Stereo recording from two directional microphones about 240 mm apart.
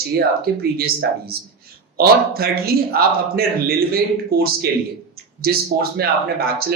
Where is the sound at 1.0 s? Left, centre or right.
Right.